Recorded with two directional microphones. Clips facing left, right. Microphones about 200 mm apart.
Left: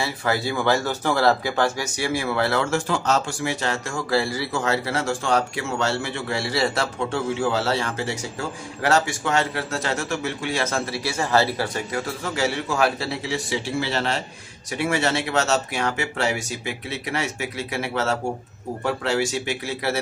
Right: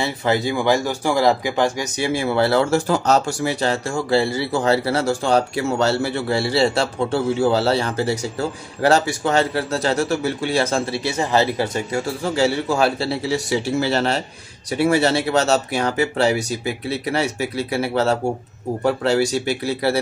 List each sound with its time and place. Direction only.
0.0 s speech: 20° right (ahead or behind)